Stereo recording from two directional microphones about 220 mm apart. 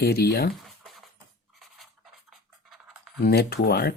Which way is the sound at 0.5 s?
Centre (ahead or behind).